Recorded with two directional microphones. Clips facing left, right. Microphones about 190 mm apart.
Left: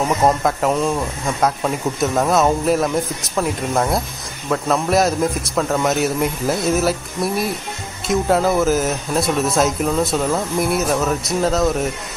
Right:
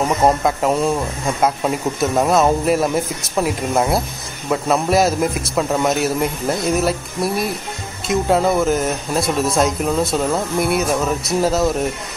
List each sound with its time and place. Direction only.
0.4 s speech: centre (ahead or behind)